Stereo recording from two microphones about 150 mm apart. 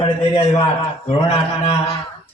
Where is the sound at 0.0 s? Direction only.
35° left (ahead or behind).